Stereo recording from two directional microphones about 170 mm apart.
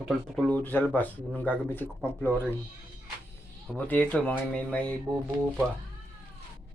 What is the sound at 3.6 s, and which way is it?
Speech, 10° left (ahead or behind).